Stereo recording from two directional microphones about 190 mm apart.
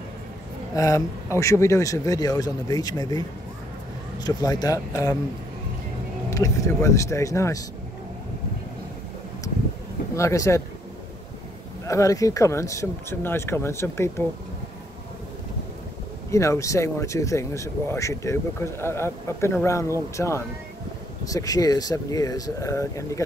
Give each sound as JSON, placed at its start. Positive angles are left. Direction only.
{"t": 0.7, "sound": "speech", "side_deg": 15}
{"t": 6.3, "sound": "speech", "side_deg": 15}
{"t": 10.1, "sound": "speech", "side_deg": 15}
{"t": 11.8, "sound": "speech", "side_deg": 15}
{"t": 16.3, "sound": "speech", "side_deg": 15}